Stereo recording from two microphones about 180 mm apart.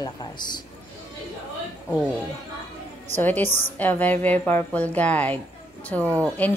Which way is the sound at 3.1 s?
10° left (ahead or behind).